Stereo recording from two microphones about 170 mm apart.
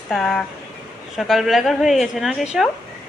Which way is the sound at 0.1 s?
Centre (ahead or behind).